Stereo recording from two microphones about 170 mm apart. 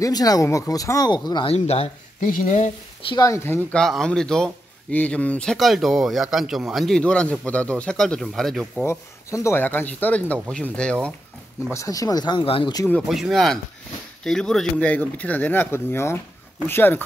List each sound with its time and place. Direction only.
0.0 s speech: 20° left (ahead or behind); by 1.9 s 35° left (ahead or behind)
2.1 s speech: 55° left (ahead or behind)
3.1 s speech: 20° left (ahead or behind); by 8.8 s centre (ahead or behind)
8.8 s speech: 15° left (ahead or behind)
11.7 s speech: 20° left (ahead or behind)
12.8 s speech: 5° left (ahead or behind)